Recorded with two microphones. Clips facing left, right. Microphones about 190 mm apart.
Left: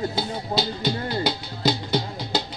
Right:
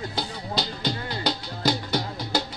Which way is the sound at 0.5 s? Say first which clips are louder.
Left 4 dB; 30° left (ahead or behind).